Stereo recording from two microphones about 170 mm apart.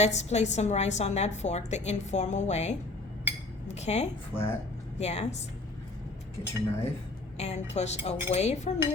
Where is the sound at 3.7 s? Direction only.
40° left (ahead or behind).